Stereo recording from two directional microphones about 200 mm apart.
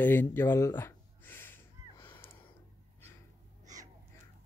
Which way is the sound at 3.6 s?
15° right (ahead or behind).